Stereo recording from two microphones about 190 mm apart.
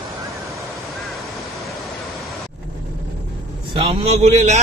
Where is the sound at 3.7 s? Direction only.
30° right (ahead or behind).